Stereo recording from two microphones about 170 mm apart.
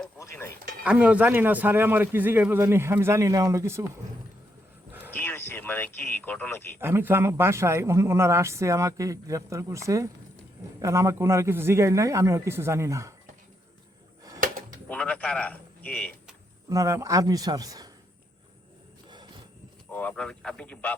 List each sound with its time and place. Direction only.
0.2 s a sound: 15° left (ahead or behind)
0.9 s speech: 10° right (ahead or behind)
4.9 s a sound: 10° right (ahead or behind)
5.1 s speech: 10° left (ahead or behind)
6.7 s speech: 15° right (ahead or behind)
14.8 s a man's voice: 10° left (ahead or behind)
16.6 s a man's voice: 20° right (ahead or behind)
19.9 s speech: 10° left (ahead or behind)